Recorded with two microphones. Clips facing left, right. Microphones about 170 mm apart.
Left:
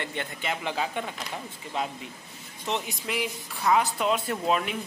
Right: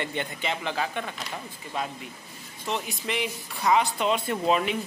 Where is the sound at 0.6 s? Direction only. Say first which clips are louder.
Even; 15° left (ahead or behind).